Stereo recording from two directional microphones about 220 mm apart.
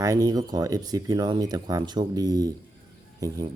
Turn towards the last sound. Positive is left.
turn(degrees=-15)  # may be behind; listen again after turning